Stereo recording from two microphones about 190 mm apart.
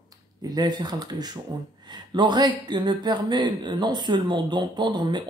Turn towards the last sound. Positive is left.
turn(degrees=-25)  # may be behind; listen again after turning